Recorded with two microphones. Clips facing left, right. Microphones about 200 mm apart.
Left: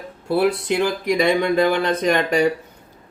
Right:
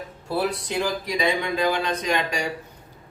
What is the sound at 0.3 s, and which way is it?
Speech, 55° left (ahead or behind).